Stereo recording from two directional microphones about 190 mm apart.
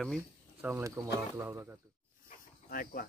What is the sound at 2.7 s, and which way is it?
Speech, 50° left (ahead or behind).